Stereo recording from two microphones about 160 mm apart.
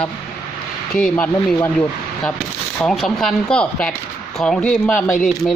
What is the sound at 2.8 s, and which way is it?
Speech, centre (ahead or behind).